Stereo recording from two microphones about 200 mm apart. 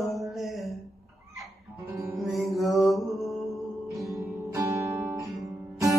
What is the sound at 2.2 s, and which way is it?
Music, centre (ahead or behind).